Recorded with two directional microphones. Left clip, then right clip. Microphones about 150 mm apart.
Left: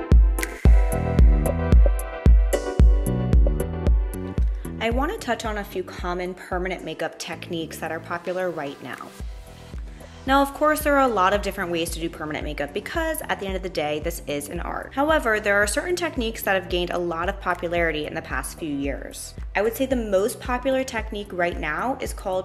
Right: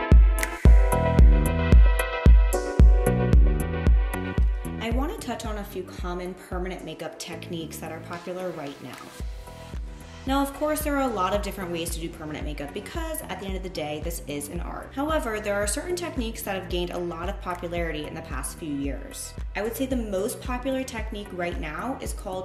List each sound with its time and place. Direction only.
0.1 s music: centre (ahead or behind)
4.7 s a woman's voice: 10° left (ahead or behind)
10.2 s a woman's voice: 10° left (ahead or behind)